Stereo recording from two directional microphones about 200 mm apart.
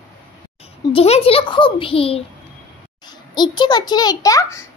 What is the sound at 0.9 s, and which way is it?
A child's voice, 30° left (ahead or behind).